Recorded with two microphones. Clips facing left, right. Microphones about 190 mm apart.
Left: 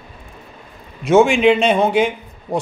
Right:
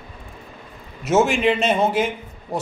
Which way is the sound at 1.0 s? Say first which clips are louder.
Left 6 dB; 5° right (ahead or behind).